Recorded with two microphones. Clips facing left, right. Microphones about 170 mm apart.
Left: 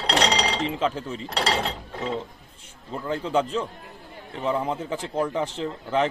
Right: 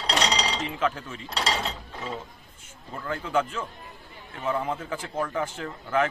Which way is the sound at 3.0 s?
30° left (ahead or behind).